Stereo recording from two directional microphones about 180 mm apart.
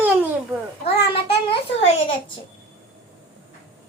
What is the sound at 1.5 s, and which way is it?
Speech, 90° left.